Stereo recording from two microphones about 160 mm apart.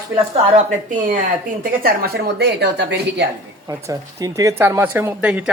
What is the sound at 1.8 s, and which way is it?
A woman's voice, 70° right (ahead or behind).